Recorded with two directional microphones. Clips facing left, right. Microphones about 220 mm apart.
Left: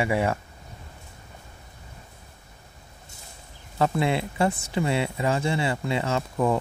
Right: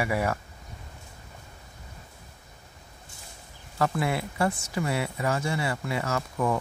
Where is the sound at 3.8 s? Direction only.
25° left (ahead or behind).